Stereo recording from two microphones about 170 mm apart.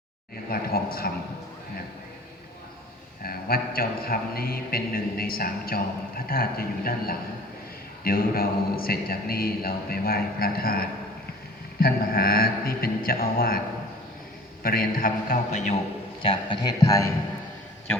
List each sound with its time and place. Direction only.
0.5 s a man's voice: 60° left (ahead or behind)
3.2 s a man's voice: 60° left (ahead or behind)
14.6 s a man's voice: 60° left (ahead or behind)
16.2 s speech: 30° left (ahead or behind)